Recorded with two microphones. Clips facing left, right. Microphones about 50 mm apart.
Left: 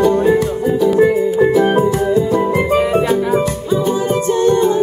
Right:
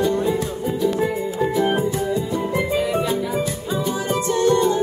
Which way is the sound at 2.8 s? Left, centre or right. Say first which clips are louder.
Left 7 dB; left.